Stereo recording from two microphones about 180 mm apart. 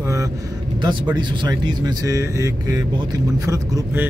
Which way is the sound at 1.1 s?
25° right (ahead or behind).